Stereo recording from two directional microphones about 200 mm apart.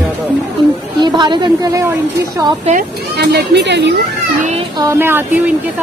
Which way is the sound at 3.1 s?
55° right (ahead or behind).